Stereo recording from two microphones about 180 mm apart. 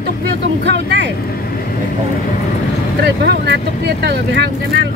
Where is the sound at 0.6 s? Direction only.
75° right (ahead or behind).